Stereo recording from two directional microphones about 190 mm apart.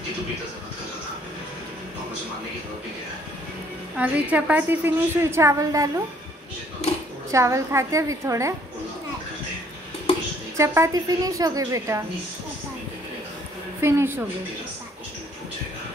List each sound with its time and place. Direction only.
3.9 s a woman's voice: 5° right (ahead or behind)
6.8 s a sound: 35° left (ahead or behind)
7.2 s a woman's voice: 15° right (ahead or behind)
10.6 s a woman's voice: 15° right (ahead or behind)
13.7 s a woman's voice: 15° right (ahead or behind)